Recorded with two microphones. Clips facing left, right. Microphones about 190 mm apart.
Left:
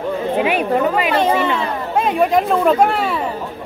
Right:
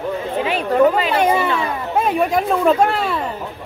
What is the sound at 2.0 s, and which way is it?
Speech, centre (ahead or behind).